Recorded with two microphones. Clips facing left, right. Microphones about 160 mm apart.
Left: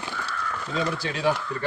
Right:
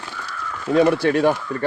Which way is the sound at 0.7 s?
65° right (ahead or behind).